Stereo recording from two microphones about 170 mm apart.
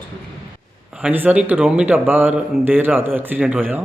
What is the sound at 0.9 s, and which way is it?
Speech, 10° right (ahead or behind).